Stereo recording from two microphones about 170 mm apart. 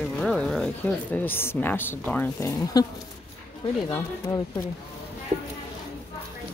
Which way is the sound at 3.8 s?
20° left (ahead or behind).